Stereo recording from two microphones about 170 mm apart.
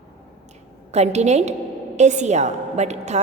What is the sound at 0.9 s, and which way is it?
A woman's voice, 40° right (ahead or behind).